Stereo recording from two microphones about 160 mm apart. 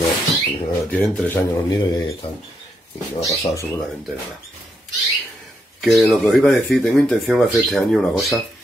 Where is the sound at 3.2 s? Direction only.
20° left (ahead or behind).